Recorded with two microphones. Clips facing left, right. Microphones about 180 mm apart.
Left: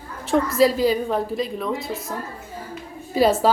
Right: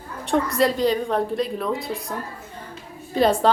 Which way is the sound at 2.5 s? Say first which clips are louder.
Left 4 dB; 5° left (ahead or behind).